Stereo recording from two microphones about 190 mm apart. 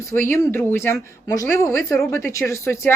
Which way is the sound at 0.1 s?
15° left (ahead or behind).